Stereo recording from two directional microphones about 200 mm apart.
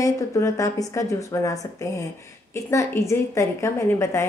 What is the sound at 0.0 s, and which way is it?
A woman's voice, 15° left (ahead or behind).